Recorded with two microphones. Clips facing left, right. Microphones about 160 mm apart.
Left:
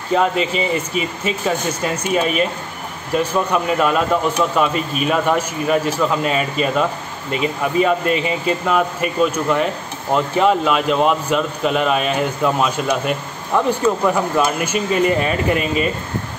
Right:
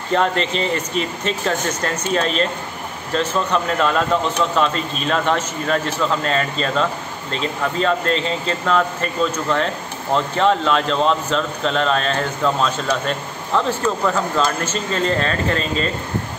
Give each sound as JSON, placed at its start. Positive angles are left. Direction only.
{"t": 0.1, "sound": "a man's voice", "side_deg": 5}